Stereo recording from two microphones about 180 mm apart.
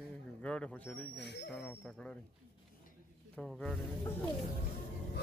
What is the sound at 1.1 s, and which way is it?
Speech, 70° left (ahead or behind).